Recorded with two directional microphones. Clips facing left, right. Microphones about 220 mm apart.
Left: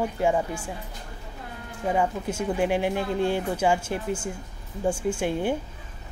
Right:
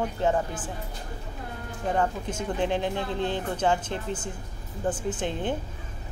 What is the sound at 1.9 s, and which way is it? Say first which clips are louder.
Speech: left 2 dB; 10° left (ahead or behind).